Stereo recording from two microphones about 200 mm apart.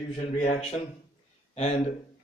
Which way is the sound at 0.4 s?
35° left (ahead or behind).